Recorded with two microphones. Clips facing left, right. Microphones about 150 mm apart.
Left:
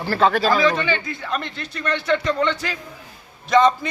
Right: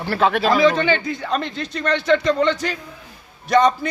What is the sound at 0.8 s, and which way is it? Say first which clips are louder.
A man's voice: right 4 dB; 30° right (ahead or behind).